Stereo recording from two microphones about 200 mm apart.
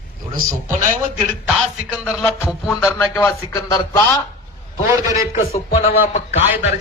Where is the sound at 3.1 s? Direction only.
15° left (ahead or behind).